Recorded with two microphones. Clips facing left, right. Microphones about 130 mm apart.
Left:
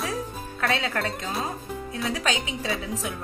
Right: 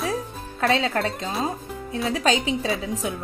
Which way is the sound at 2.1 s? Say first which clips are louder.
Right 7 dB; 30° right (ahead or behind).